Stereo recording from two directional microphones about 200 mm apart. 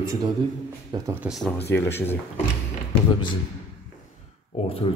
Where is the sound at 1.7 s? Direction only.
10° left (ahead or behind).